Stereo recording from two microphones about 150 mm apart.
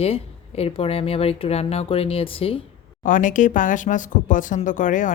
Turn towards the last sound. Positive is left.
turn(degrees=60)  # may be behind; listen again after turning